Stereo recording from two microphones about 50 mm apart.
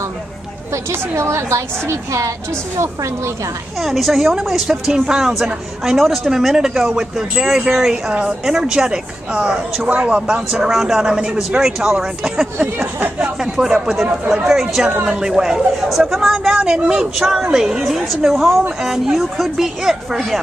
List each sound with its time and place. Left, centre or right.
1.1 s a woman's voice: right
3.8 s speech: centre
8.1 s a woman's voice: right; by 12.4 s centre
12.7 s speech: right
13.4 s speech: centre
16.6 s speech: centre